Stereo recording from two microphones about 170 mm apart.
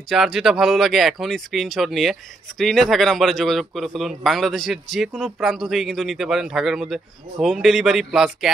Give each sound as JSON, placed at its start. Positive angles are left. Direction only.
{"t": 0.1, "sound": "speech", "side_deg": 0}